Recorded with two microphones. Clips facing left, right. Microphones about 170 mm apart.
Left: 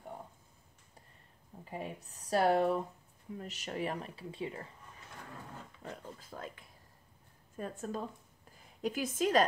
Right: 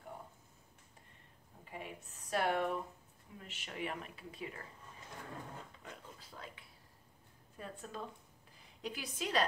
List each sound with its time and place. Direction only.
1.6 s speech: 35° left (ahead or behind)
5.8 s a sound: 45° left (ahead or behind)
7.5 s a woman's voice: 45° left (ahead or behind)